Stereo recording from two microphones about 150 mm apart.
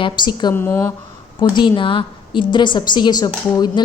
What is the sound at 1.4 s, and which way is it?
A woman's voice, 30° left (ahead or behind).